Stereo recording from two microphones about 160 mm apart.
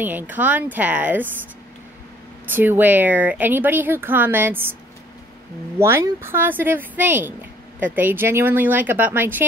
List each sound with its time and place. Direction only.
0.0 s speech: 10° right (ahead or behind)
2.5 s speech: 10° right (ahead or behind)
5.8 s speech: 15° right (ahead or behind)